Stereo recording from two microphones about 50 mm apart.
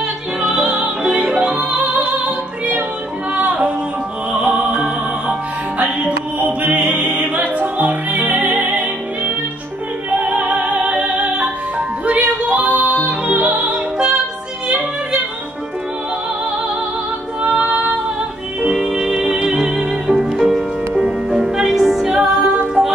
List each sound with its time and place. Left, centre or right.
0.4 s music: right
1.4 s opera: right
3.3 s music: right
5.8 s music: right
10.3 s opera: right
12.1 s music: right
13.9 s music: centre
17.5 s female singing: centre
18.7 s music: centre